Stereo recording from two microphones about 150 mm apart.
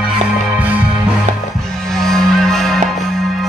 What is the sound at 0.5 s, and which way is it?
Music, 10° right (ahead or behind).